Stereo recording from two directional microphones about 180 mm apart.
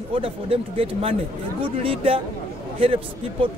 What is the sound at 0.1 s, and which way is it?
A man's voice, 30° right (ahead or behind).